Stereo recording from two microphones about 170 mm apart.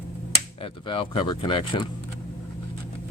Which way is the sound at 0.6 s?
30° left (ahead or behind).